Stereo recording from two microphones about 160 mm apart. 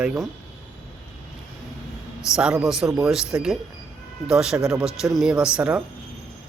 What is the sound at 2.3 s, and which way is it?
Speech, 5° right (ahead or behind).